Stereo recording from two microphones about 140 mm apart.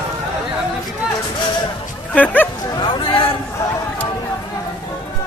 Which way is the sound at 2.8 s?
35° left (ahead or behind).